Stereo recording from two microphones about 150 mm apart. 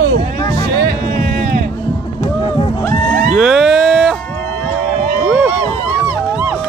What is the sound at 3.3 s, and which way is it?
Music, 5° right (ahead or behind).